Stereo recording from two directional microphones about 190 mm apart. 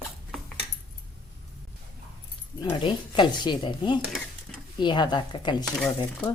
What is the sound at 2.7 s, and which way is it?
Speech, 25° left (ahead or behind).